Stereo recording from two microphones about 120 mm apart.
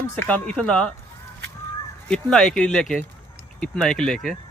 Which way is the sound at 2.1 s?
5° left (ahead or behind).